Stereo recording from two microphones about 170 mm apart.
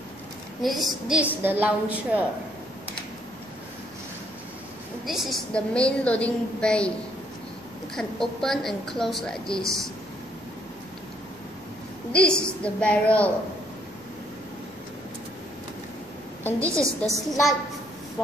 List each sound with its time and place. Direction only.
0.6 s a woman's voice: centre (ahead or behind)
5.0 s a woman's voice: centre (ahead or behind)
7.9 s a woman's voice: 5° left (ahead or behind)
12.1 s a woman's voice: 5° left (ahead or behind)
16.5 s a woman's voice: 15° right (ahead or behind)